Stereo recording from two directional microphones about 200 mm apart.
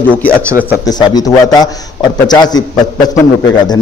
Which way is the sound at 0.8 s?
20° left (ahead or behind).